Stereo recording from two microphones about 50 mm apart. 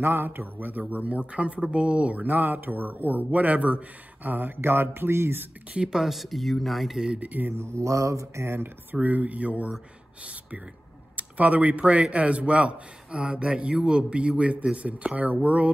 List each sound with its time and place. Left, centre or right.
0.0 s a man's voice: right
2.2 s a man's voice: right
4.2 s speech: right
5.9 s speech: centre
7.2 s a man's voice: right
7.4 s mantra: right
9.0 s a man's voice: right
11.1 s a man's voice: right